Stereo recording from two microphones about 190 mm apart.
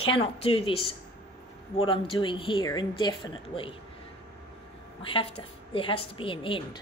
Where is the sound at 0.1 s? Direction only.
30° left (ahead or behind).